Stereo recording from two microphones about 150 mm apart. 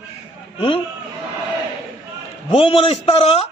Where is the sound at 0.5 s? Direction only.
35° left (ahead or behind).